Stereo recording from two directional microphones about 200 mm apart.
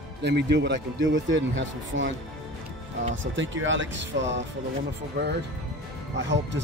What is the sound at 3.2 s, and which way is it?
Speech, 70° right (ahead or behind).